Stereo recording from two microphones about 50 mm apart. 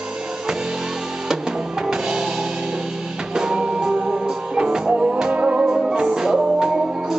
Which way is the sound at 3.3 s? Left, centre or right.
Centre.